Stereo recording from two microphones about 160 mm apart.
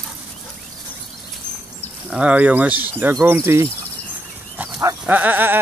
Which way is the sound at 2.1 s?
10° right (ahead or behind).